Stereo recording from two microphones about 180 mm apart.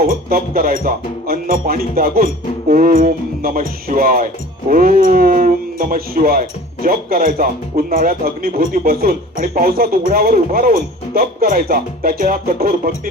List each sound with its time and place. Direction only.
0.0 s a man's voice: 55° right (ahead or behind)